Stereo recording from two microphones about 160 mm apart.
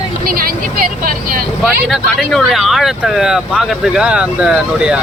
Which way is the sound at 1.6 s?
Centre (ahead or behind).